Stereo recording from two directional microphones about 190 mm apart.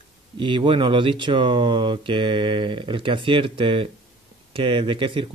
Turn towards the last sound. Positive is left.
turn(degrees=-25)  # may be behind; listen again after turning